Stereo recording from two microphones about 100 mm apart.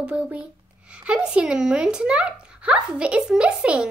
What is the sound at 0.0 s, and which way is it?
A woman's voice, 10° right (ahead or behind).